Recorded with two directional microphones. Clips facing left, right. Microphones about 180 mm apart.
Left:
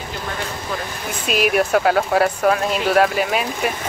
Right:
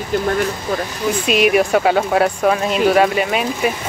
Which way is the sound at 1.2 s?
Centre (ahead or behind).